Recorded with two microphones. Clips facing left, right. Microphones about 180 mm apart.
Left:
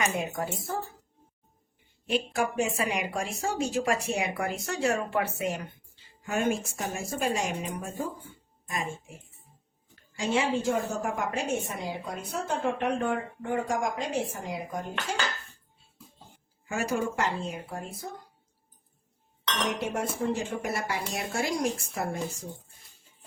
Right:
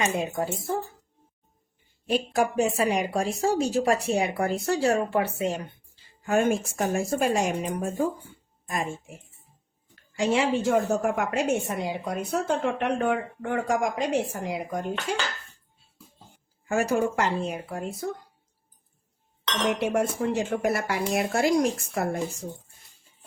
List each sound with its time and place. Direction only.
0.0 s a woman's voice: 25° right (ahead or behind)
2.0 s speech: 40° right (ahead or behind)
6.2 s a woman's voice: 55° right (ahead or behind)
10.2 s a woman's voice: 70° right (ahead or behind)
16.6 s a woman's voice: 55° right (ahead or behind)
19.6 s a woman's voice: 70° right (ahead or behind)